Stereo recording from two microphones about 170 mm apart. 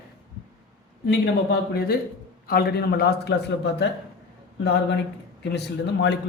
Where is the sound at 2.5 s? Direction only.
65° left (ahead or behind).